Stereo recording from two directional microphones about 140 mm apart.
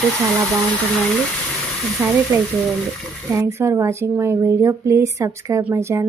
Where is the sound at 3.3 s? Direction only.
20° right (ahead or behind).